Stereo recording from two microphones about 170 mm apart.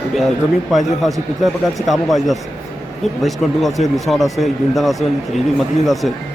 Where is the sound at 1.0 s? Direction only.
Centre (ahead or behind).